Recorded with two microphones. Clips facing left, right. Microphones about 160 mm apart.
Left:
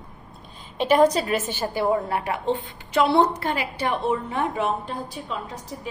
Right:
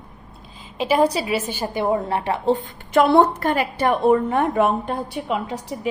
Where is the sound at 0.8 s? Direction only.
5° right (ahead or behind).